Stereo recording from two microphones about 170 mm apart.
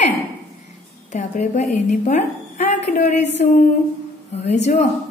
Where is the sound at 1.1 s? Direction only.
45° left (ahead or behind).